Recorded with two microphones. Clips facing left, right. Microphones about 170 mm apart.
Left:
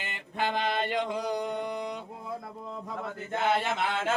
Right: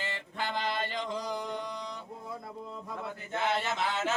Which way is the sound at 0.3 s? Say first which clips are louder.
Left 5 dB; 60° left (ahead or behind).